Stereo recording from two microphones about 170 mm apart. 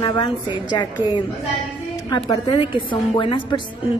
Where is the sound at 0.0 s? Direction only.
25° left (ahead or behind).